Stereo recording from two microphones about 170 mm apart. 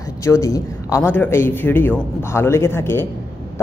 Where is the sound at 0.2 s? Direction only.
20° left (ahead or behind).